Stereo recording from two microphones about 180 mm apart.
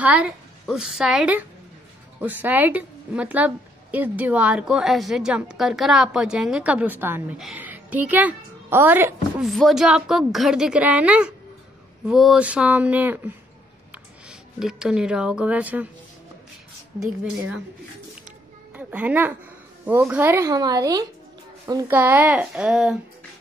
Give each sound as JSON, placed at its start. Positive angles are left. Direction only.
{"t": 0.0, "sound": "a woman's voice", "side_deg": -5}
{"t": 9.5, "sound": "a woman's voice", "side_deg": 0}
{"t": 14.6, "sound": "a woman's voice", "side_deg": -5}
{"t": 18.8, "sound": "a child's voice", "side_deg": -10}